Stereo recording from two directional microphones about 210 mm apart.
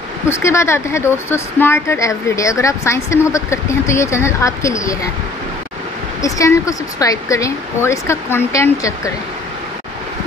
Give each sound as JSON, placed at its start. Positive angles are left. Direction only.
{"t": 0.3, "sound": "speech", "side_deg": 15}
{"t": 6.2, "sound": "speech", "side_deg": 15}